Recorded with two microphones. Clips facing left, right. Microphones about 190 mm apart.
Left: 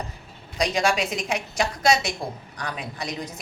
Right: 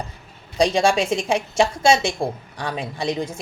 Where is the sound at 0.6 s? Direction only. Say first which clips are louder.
Right 5 dB; 30° right (ahead or behind).